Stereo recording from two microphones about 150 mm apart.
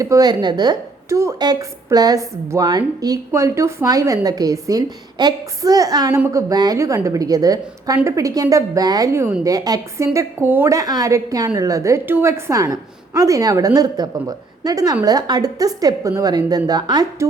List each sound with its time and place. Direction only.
0.0 s a woman's voice: 25° right (ahead or behind)